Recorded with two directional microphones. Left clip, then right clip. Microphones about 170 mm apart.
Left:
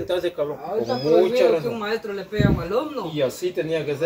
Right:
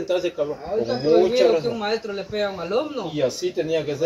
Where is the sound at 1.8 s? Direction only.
5° left (ahead or behind).